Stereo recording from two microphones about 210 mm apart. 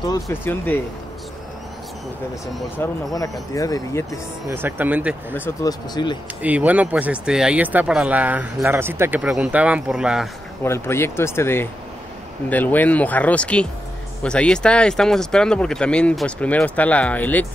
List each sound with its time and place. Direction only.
0.0 s speech: 15° left (ahead or behind)
2.8 s speech: 15° left (ahead or behind)
4.5 s speech: 10° right (ahead or behind)
5.3 s speech: 15° left (ahead or behind)
6.4 s speech: 5° right (ahead or behind)
10.6 s speech: 10° left (ahead or behind)